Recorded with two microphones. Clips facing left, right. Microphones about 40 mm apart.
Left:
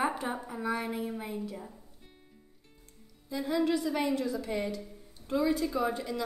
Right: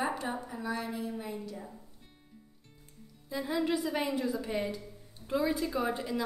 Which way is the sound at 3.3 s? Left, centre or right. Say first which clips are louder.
Left 2 dB; centre.